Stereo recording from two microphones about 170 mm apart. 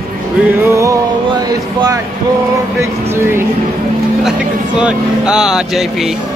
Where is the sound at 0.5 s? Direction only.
15° right (ahead or behind).